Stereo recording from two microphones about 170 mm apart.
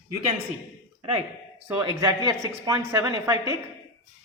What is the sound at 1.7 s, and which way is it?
Speech, 20° right (ahead or behind).